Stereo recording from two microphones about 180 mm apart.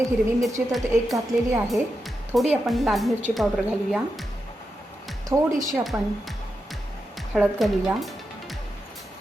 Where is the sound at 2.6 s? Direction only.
Centre (ahead or behind).